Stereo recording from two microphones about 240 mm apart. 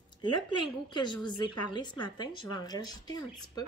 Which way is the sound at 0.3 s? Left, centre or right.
Centre.